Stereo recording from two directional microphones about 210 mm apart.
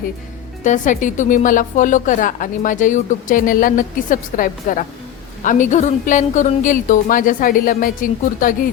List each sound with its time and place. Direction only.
0.6 s a woman's voice: 35° left (ahead or behind)